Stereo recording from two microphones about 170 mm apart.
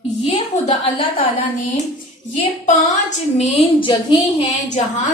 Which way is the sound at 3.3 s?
40° left (ahead or behind).